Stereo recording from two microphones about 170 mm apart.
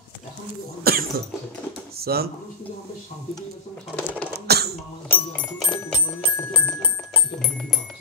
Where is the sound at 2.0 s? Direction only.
65° right (ahead or behind).